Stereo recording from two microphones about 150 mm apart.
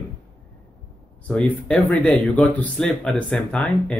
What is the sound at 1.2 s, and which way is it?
Speech, 10° left (ahead or behind).